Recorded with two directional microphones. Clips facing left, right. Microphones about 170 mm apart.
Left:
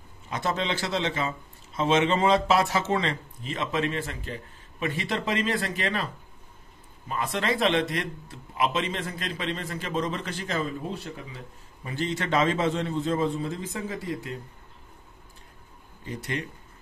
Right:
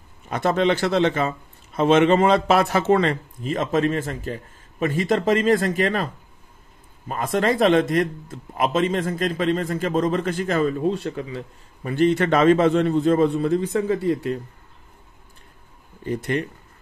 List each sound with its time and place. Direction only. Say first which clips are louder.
0.3 s a man's voice: right 9 dB; 55° right (ahead or behind)
7.1 s a man's voice: right 6 dB; 45° right (ahead or behind); by 14.4 s 65° right (ahead or behind)
16.1 s speech: right 9 dB; 55° right (ahead or behind)